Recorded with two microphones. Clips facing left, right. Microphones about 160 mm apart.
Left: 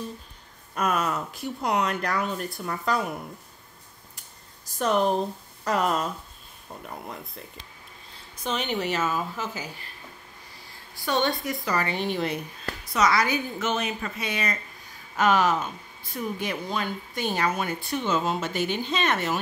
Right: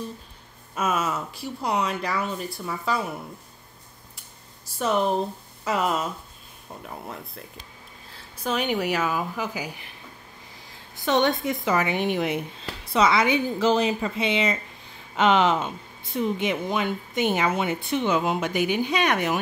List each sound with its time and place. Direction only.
0.7 s speech: 5° right (ahead or behind)
4.7 s speech: centre (ahead or behind)
8.5 s a woman's voice: 10° right (ahead or behind)
11.0 s speech: 20° right (ahead or behind)